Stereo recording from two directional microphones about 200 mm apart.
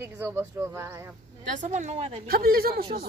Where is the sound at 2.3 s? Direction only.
50° right (ahead or behind).